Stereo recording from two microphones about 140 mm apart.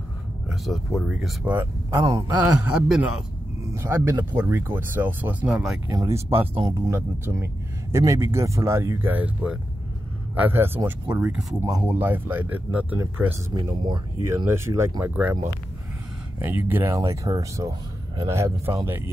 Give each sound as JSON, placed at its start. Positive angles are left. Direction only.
{"t": 0.5, "sound": "speech", "side_deg": 0}
{"t": 2.0, "sound": "speech", "side_deg": -25}
{"t": 2.3, "sound": "speech", "side_deg": -5}
{"t": 3.6, "sound": "speech", "side_deg": -20}
{"t": 5.9, "sound": "speech", "side_deg": -25}
{"t": 13.6, "sound": "speech", "side_deg": -35}
{"t": 14.2, "sound": "speech", "side_deg": -20}
{"t": 16.3, "sound": "speech", "side_deg": -15}